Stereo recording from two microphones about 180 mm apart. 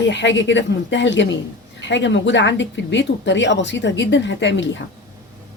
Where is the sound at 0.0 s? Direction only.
85° left.